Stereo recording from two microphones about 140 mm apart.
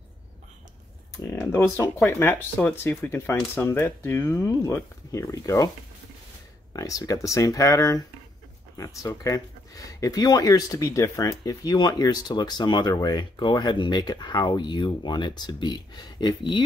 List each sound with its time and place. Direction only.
1.2 s speech: 20° left (ahead or behind)
6.7 s speech: 25° left (ahead or behind)